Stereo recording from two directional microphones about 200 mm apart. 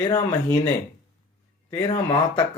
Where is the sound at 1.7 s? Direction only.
20° left (ahead or behind).